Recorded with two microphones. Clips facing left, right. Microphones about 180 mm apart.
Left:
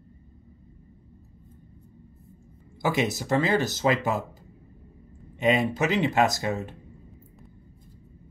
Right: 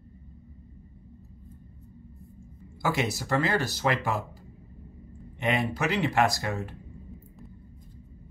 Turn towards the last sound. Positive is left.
turn(degrees=20)  # may be behind; listen again after turning